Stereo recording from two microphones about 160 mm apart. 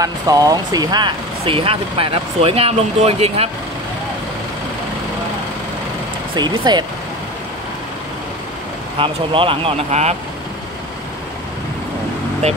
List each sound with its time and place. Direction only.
0.0 s speech: 20° right (ahead or behind); by 3.4 s 40° right (ahead or behind)
6.3 s speech: 25° right (ahead or behind)
8.9 s speech: 35° right (ahead or behind)
12.4 s speech: 45° right (ahead or behind)